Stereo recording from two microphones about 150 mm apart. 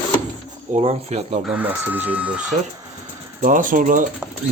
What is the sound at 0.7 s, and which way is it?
Speech, 50° right (ahead or behind).